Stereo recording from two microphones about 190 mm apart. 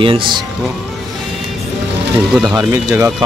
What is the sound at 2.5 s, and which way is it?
Speech, 15° right (ahead or behind).